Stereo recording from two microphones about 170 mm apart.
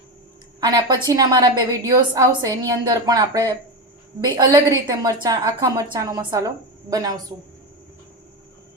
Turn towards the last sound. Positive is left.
turn(degrees=-20)  # may be behind; listen again after turning